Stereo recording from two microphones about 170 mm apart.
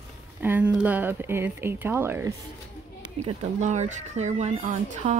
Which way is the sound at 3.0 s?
40° right (ahead or behind).